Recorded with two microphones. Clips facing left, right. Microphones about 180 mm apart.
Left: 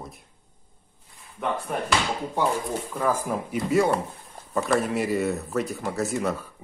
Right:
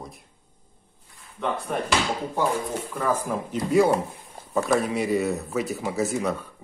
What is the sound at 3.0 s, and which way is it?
Speech, 10° left (ahead or behind).